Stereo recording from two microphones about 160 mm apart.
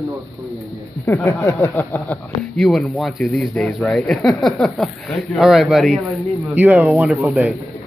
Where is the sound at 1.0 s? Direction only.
10° left (ahead or behind).